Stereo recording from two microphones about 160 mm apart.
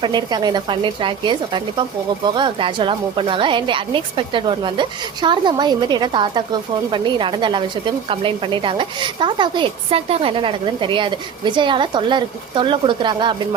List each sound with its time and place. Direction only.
0.0 s a woman's voice: 25° right (ahead or behind)